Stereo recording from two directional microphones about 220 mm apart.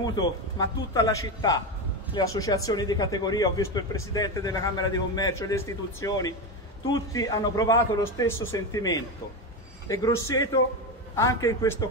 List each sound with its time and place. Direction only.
0.0 s speech: 15° left (ahead or behind)